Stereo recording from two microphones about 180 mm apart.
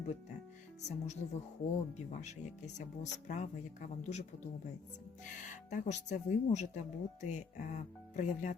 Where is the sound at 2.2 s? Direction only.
40° left (ahead or behind).